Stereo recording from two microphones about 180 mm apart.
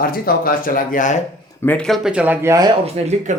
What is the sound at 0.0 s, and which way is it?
Speech, 55° left (ahead or behind).